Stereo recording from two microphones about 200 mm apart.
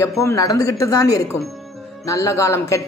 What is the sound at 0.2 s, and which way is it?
Speech, 15° left (ahead or behind).